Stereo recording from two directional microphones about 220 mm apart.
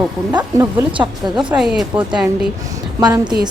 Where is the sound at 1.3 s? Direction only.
5° right (ahead or behind).